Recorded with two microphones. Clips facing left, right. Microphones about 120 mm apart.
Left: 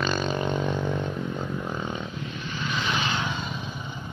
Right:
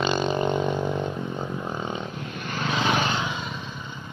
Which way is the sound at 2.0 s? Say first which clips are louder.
Right 1 dB; 50° right (ahead or behind).